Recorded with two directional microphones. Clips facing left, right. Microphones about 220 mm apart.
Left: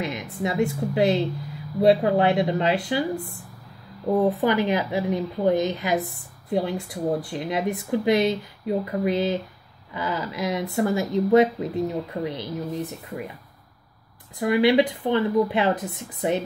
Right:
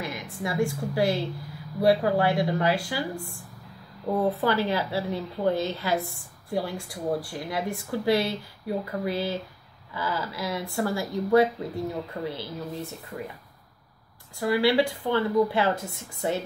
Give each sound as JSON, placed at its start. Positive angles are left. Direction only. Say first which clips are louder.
{"t": 0.0, "sound": "a woman's voice", "louder": "left 5 dB", "side_deg": 20}
{"t": 4.2, "sound": "a woman's voice", "louder": "left 3 dB", "side_deg": 15}
{"t": 14.4, "sound": "a woman's voice", "louder": "left 4 dB", "side_deg": 20}